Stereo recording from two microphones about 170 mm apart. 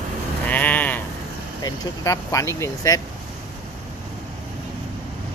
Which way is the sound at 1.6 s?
20° left (ahead or behind).